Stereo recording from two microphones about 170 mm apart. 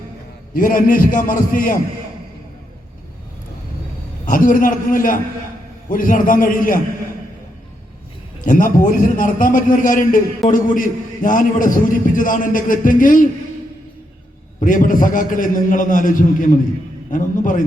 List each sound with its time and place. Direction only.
0.5 s a man's voice: 55° left (ahead or behind)
4.3 s a man's voice: 55° left (ahead or behind)
8.4 s a man's voice: 50° left (ahead or behind)
14.6 s a man's voice: 50° left (ahead or behind)